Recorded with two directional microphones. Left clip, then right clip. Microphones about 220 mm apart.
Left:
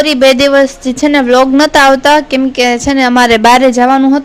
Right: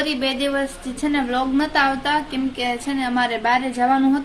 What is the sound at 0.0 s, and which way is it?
A woman's voice, 45° left (ahead or behind).